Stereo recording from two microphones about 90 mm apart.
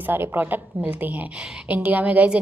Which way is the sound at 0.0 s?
25° right (ahead or behind).